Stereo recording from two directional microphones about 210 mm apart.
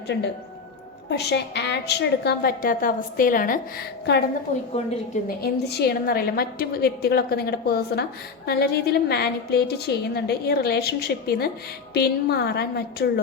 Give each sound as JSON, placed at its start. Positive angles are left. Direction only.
{"t": 0.1, "sound": "a woman's voice", "side_deg": 55}
{"t": 4.8, "sound": "a woman's voice", "side_deg": 30}
{"t": 5.4, "sound": "a woman's voice", "side_deg": 50}